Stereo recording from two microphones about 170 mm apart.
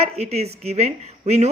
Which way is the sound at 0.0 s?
40° right (ahead or behind).